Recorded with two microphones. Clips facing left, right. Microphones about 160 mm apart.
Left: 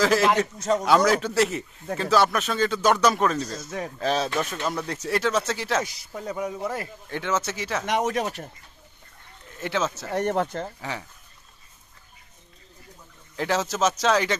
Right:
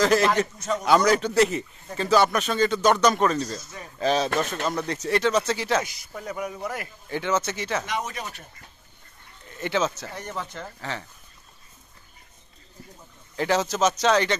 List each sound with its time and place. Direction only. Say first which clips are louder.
0.0 s speech: even; 5° left (ahead or behind)
6.1 s a man's voice: left 2 dB; 20° left (ahead or behind)
7.1 s speech: right 2 dB; centre (ahead or behind)
7.8 s speech: left 7 dB; 70° left (ahead or behind)
9.5 s speech: right 2 dB; centre (ahead or behind)
10.1 s speech: left 10 dB; 60° left (ahead or behind)
10.8 s speech: even; 10° left (ahead or behind)
13.4 s speech: right 1 dB; centre (ahead or behind)